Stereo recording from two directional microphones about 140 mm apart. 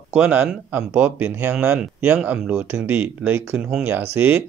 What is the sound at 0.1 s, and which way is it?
Speech, 15° right (ahead or behind).